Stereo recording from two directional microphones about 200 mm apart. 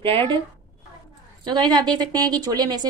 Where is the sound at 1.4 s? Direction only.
20° right (ahead or behind).